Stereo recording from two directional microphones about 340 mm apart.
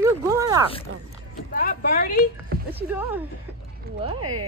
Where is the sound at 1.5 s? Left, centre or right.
Left.